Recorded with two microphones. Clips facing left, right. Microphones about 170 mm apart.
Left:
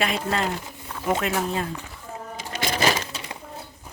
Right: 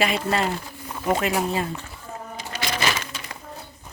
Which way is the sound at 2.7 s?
35° left (ahead or behind).